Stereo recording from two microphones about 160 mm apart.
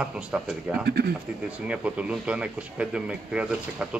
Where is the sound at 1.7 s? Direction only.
10° right (ahead or behind).